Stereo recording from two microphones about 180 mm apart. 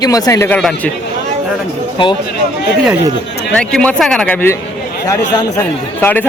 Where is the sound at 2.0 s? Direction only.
30° left (ahead or behind).